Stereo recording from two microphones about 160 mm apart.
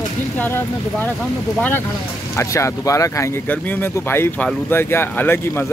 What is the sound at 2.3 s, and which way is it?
Speech, 20° left (ahead or behind).